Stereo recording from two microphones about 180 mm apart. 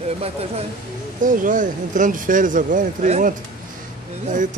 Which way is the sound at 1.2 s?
45° right (ahead or behind).